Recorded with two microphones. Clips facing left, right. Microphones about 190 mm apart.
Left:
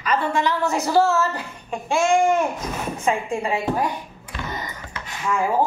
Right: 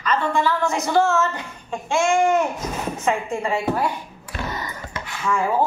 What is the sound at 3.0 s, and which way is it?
Speech, 15° left (ahead or behind).